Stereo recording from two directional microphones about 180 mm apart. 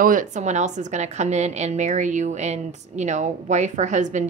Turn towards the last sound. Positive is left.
turn(degrees=-40)  # may be behind; listen again after turning